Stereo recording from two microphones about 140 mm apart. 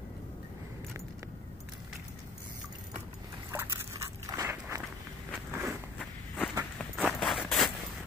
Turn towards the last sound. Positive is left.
turn(degrees=0)  # may be behind; listen again after turning